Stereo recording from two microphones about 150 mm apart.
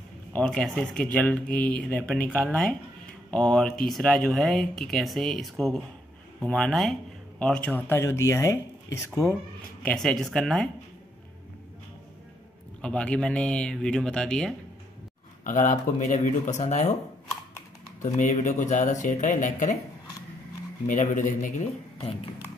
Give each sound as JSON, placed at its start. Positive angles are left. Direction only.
{"t": 0.3, "sound": "speech", "side_deg": 5}
{"t": 9.8, "sound": "speech", "side_deg": 0}
{"t": 12.8, "sound": "speech", "side_deg": 5}
{"t": 15.4, "sound": "speech", "side_deg": 60}
{"t": 18.1, "sound": "speech", "side_deg": 55}
{"t": 20.8, "sound": "speech", "side_deg": 55}